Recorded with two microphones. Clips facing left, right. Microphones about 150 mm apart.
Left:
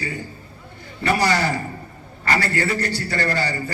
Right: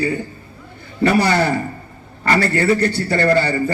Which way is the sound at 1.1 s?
55° right (ahead or behind).